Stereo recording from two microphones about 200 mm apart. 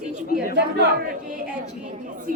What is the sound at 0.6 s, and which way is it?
Speech, 60° right (ahead or behind).